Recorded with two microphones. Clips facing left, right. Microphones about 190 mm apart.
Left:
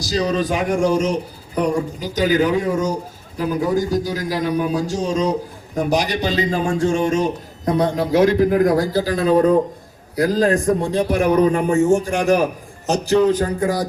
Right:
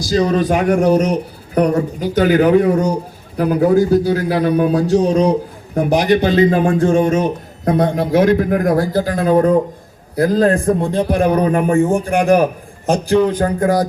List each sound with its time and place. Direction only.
0.0 s a man's voice: 55° right (ahead or behind)